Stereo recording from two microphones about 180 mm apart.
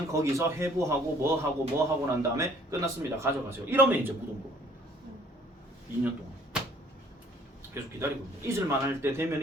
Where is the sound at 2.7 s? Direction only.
20° right (ahead or behind).